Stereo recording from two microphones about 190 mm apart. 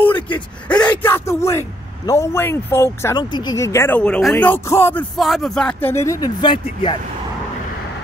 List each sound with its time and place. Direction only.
0.0 s a sound: 10° left (ahead or behind)
2.0 s speech: 15° left (ahead or behind)
5.1 s speech: centre (ahead or behind); by 7.0 s 25° left (ahead or behind)